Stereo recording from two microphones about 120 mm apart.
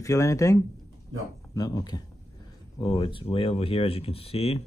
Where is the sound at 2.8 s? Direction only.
50° left (ahead or behind).